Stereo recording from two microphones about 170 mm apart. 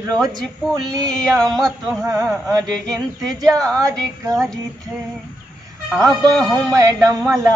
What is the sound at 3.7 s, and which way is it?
Speech, 20° right (ahead or behind).